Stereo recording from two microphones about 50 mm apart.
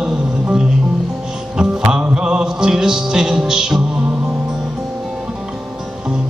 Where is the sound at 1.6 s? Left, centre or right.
Centre.